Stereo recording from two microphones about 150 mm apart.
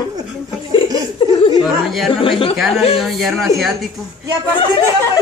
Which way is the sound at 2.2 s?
35° left (ahead or behind).